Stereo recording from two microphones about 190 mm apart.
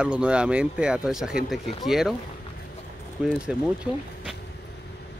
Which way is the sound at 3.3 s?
5° right (ahead or behind).